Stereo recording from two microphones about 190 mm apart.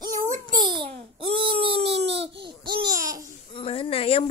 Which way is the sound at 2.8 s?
20° right (ahead or behind).